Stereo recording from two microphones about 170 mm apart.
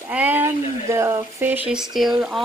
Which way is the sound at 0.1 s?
10° right (ahead or behind).